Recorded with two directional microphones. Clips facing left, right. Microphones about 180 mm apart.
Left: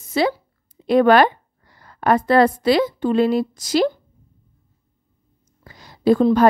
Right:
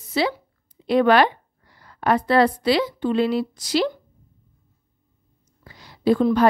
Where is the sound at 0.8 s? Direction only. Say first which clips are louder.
Left 3 dB; 45° left (ahead or behind).